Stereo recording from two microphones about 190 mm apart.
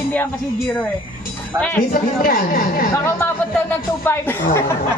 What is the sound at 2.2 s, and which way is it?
Speech, 50° left (ahead or behind).